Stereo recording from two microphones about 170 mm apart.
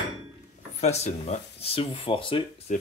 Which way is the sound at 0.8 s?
40° left (ahead or behind).